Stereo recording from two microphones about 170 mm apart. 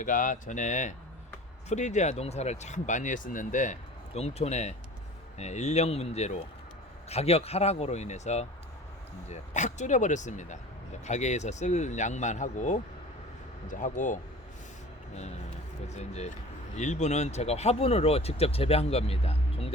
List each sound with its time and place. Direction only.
0.0 s speech: 50° left (ahead or behind)
16.0 s speech: 40° left (ahead or behind)